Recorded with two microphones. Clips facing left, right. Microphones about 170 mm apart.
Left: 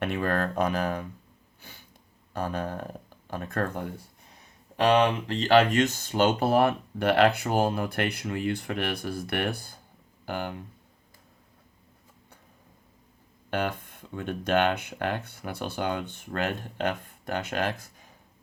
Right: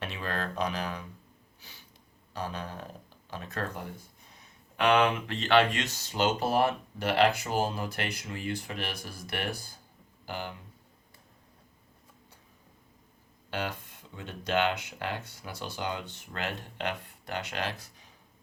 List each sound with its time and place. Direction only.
0.0 s speech: 55° left (ahead or behind)
2.3 s speech: 50° left (ahead or behind)
4.8 s speech: 35° left (ahead or behind); by 10.6 s 55° left (ahead or behind)
13.5 s speech: 55° left (ahead or behind)